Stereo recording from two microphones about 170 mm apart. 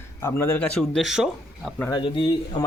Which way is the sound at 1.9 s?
30° left (ahead or behind).